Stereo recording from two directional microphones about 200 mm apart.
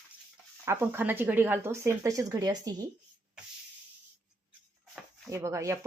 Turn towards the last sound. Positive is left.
turn(degrees=-15)  # may be behind; listen again after turning